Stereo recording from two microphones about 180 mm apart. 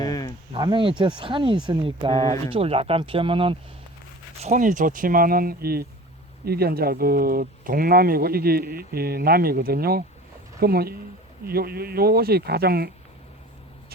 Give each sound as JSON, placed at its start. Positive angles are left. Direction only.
{"t": 0.0, "sound": "a sound", "side_deg": 20}
{"t": 0.5, "sound": "speech", "side_deg": -25}
{"t": 4.4, "sound": "speech", "side_deg": -40}